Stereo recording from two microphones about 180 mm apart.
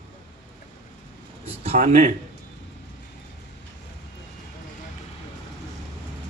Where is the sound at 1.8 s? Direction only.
40° right (ahead or behind).